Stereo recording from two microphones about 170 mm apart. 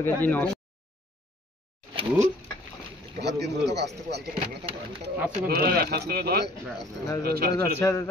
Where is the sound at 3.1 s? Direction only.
80° right.